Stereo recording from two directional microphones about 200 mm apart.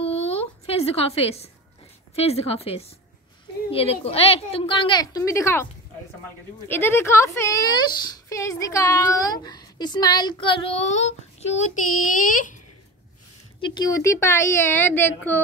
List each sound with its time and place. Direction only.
0.0 s a sound: 30° left (ahead or behind)
2.1 s a woman's voice: 30° left (ahead or behind); by 5.7 s 15° left (ahead or behind)
6.7 s a woman's voice: 10° left (ahead or behind); by 12.5 s 40° left (ahead or behind)
13.6 s a woman's voice: 20° left (ahead or behind)